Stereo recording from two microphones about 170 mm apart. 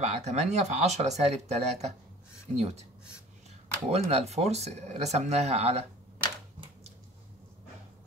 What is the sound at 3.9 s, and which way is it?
Speech, 40° right (ahead or behind).